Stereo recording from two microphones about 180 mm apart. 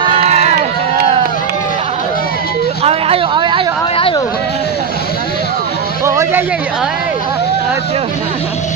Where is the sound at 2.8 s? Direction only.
35° right (ahead or behind).